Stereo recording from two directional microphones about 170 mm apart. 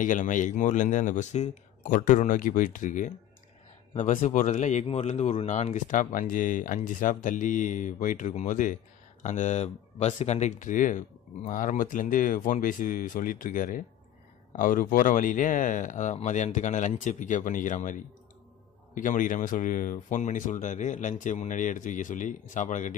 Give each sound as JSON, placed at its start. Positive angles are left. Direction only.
{"t": 0.0, "sound": "speech", "side_deg": 50}
{"t": 18.9, "sound": "speech", "side_deg": 50}